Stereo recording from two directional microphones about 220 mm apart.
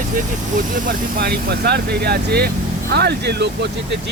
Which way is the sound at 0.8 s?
45° right (ahead or behind).